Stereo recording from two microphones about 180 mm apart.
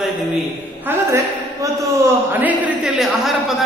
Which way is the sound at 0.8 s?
15° right (ahead or behind).